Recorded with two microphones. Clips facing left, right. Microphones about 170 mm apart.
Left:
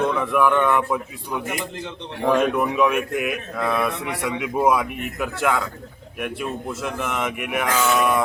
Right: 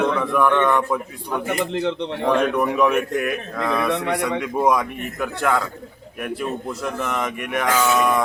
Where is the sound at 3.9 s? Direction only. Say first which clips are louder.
Right 6 dB; 70° right (ahead or behind).